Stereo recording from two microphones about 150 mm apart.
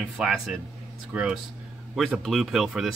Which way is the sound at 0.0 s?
5° right (ahead or behind).